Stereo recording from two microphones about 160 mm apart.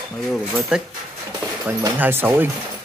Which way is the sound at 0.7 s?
5° right (ahead or behind).